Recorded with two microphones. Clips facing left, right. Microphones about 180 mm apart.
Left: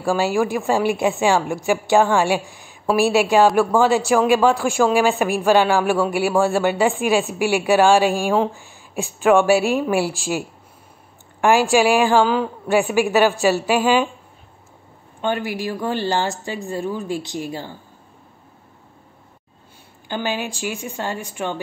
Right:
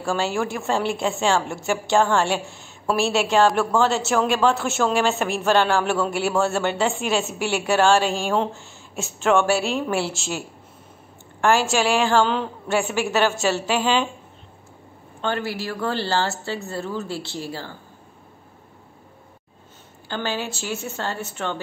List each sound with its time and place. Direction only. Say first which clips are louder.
0.0 s a woman's voice: left 5 dB; 15° left (ahead or behind)
9.2 s a woman's voice: left 5 dB; 15° left (ahead or behind)
11.4 s a woman's voice: left 4 dB; 15° left (ahead or behind)
15.2 s a woman's voice: left 3 dB; 15° left (ahead or behind)
20.1 s a woman's voice: left 2 dB; 15° left (ahead or behind)